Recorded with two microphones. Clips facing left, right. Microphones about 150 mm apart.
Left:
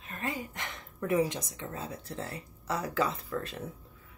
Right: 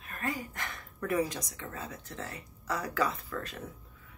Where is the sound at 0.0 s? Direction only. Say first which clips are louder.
Even; 25° left (ahead or behind).